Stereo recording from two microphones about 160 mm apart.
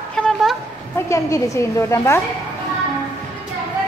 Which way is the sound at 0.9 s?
20° left (ahead or behind).